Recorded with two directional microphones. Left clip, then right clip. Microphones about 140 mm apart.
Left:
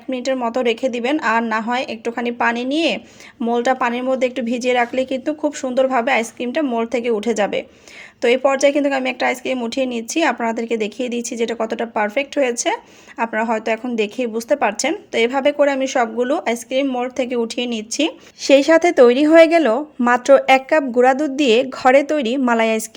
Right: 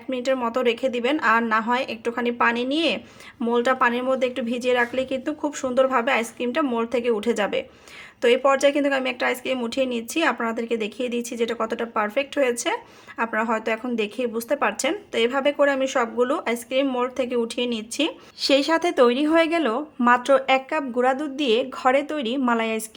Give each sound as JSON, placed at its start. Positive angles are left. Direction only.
{"t": 0.1, "sound": "a woman's voice", "side_deg": 20}
{"t": 17.2, "sound": "a woman's voice", "side_deg": 25}